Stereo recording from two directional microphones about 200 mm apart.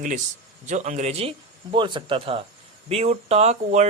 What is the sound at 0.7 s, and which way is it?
Speech, 35° right (ahead or behind).